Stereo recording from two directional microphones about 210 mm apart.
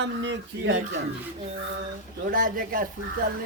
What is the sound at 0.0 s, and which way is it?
Speech, 60° right (ahead or behind).